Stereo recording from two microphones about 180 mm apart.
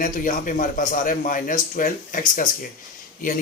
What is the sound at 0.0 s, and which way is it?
Speech, 50° left (ahead or behind).